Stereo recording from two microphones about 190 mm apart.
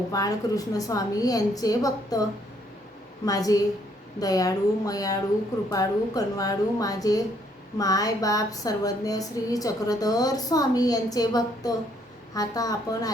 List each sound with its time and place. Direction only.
0.1 s speech: 20° left (ahead or behind)
3.2 s speech: 20° left (ahead or behind)